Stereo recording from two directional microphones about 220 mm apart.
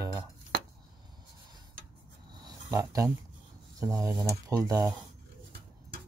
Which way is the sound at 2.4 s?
15° right (ahead or behind).